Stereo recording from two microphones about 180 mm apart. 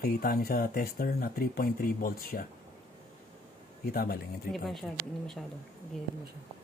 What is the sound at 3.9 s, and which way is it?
Speech, 55° left (ahead or behind).